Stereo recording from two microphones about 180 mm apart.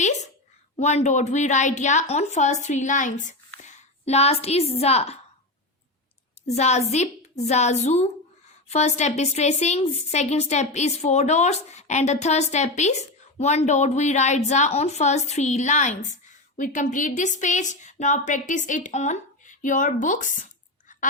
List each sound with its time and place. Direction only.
0.0 s a sound: 40° left (ahead or behind)
0.8 s a woman's voice: 40° left (ahead or behind)
6.5 s a woman's voice: 40° left (ahead or behind)